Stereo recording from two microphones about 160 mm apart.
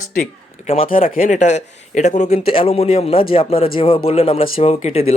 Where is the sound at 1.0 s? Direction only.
60° left (ahead or behind).